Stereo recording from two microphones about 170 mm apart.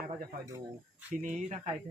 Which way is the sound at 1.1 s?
50° right (ahead or behind).